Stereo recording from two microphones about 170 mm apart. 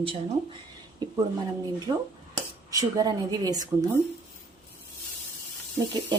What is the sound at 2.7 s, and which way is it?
Speech, 20° right (ahead or behind).